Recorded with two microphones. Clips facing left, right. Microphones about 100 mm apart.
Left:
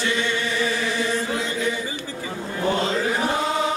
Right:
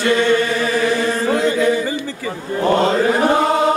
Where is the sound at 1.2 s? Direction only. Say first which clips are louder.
Right 9 dB; 70° right (ahead or behind).